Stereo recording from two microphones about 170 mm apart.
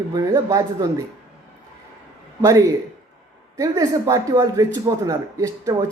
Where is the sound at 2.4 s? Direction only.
20° right (ahead or behind).